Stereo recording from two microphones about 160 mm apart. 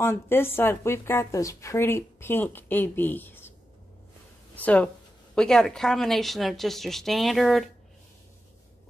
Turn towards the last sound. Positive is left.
turn(degrees=0)  # may be behind; listen again after turning